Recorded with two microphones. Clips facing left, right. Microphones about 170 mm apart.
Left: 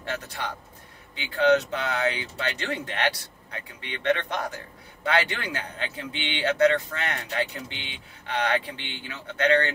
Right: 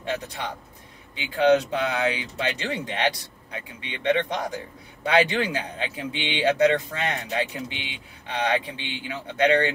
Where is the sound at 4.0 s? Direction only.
20° right (ahead or behind).